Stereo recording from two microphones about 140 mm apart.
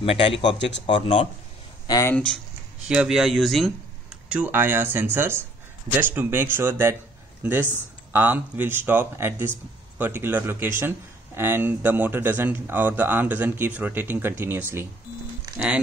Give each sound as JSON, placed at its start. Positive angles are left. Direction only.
{"t": 0.0, "sound": "speech", "side_deg": 45}
{"t": 0.4, "sound": "speech", "side_deg": 30}
{"t": 1.0, "sound": "speech", "side_deg": 45}
{"t": 1.9, "sound": "speech", "side_deg": 25}
{"t": 2.1, "sound": "speech", "side_deg": 5}
{"t": 8.1, "sound": "speech", "side_deg": -15}